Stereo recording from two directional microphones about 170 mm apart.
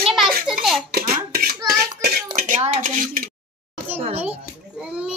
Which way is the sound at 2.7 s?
50° right (ahead or behind).